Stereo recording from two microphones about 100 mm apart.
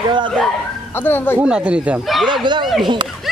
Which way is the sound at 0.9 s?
20° left (ahead or behind).